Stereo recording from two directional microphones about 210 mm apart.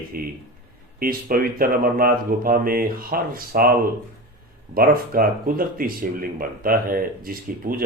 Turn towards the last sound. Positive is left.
turn(degrees=-45)  # may be behind; listen again after turning